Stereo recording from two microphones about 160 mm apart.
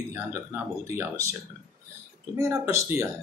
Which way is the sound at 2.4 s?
15° right (ahead or behind).